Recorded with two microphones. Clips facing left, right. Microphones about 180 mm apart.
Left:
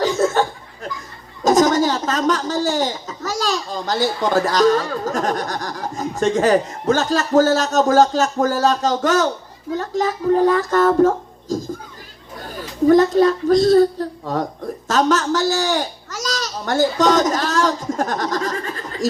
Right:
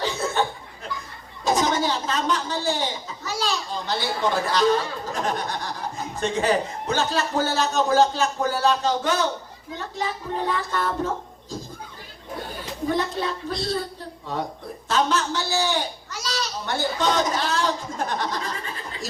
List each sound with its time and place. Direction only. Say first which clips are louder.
0.0 s chuckle: left 7 dB; 45° left (ahead or behind)
1.5 s a man's voice: left 7 dB; 45° left (ahead or behind)
12.9 s a man's voice: left 13 dB; 45° left (ahead or behind)